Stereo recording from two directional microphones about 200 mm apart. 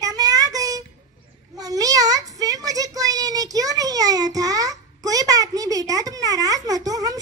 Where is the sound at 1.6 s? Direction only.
20° right (ahead or behind).